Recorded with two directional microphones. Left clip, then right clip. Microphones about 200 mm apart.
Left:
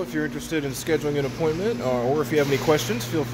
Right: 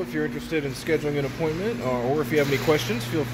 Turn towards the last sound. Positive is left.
turn(degrees=10)  # may be behind; listen again after turning